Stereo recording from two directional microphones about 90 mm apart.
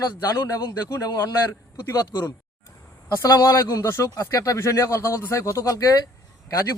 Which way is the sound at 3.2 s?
35° left (ahead or behind).